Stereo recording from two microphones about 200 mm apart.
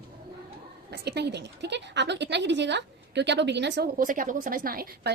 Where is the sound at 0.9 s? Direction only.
55° right (ahead or behind).